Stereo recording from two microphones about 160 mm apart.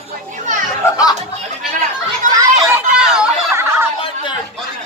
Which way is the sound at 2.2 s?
50° right (ahead or behind).